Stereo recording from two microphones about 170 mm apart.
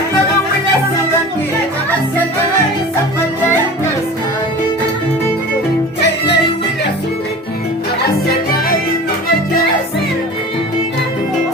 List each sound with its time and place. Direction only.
6.0 s music: 90° left